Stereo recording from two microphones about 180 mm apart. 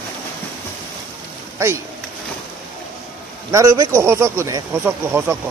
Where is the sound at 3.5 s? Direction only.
15° right (ahead or behind).